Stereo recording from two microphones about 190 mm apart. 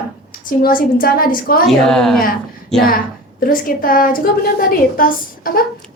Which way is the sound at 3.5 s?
50° left (ahead or behind).